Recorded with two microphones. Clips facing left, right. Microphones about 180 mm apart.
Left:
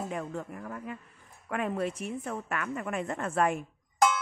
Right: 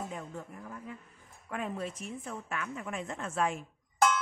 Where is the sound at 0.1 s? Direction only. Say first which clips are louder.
Left 6 dB; 75° left (ahead or behind).